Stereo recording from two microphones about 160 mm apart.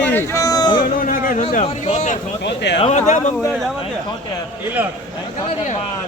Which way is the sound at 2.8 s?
45° left (ahead or behind).